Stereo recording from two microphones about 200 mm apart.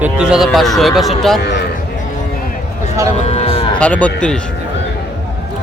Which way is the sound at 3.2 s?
30° left (ahead or behind).